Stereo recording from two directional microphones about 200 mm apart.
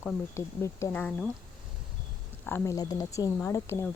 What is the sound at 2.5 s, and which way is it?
Speech, 15° left (ahead or behind).